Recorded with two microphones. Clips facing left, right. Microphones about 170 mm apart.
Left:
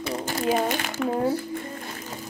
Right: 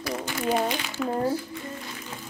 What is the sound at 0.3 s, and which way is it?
Speech, 40° left (ahead or behind).